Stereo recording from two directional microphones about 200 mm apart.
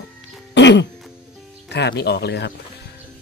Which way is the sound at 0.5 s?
60° left (ahead or behind).